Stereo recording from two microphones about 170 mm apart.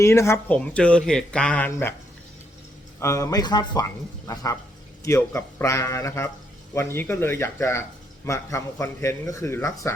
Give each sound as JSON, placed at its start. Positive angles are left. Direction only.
{"t": 0.0, "sound": "speech", "side_deg": 15}
{"t": 3.0, "sound": "speech", "side_deg": 20}